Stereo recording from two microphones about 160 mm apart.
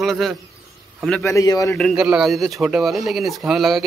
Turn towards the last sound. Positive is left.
turn(degrees=0)  # may be behind; listen again after turning